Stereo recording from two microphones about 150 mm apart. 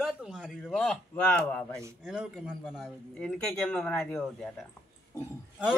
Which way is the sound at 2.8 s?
5° left (ahead or behind).